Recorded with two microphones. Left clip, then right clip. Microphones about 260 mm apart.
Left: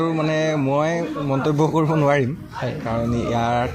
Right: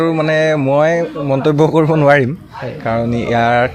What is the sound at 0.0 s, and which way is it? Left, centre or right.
Speech, right.